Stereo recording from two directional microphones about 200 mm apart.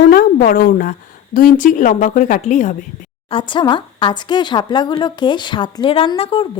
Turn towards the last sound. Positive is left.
turn(degrees=25)  # may be behind; listen again after turning